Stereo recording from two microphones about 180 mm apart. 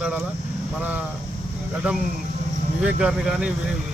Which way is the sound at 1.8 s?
10° right (ahead or behind).